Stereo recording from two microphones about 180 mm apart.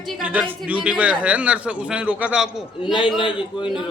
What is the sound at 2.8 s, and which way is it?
Speech, 25° left (ahead or behind).